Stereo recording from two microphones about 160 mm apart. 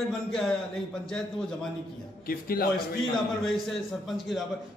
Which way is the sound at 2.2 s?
65° left (ahead or behind).